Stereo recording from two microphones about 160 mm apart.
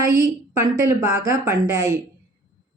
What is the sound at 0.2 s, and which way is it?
A woman's voice, 20° right (ahead or behind).